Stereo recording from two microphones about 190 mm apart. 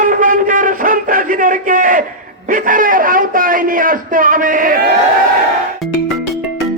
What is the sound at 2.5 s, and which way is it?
A man's voice, 45° right (ahead or behind).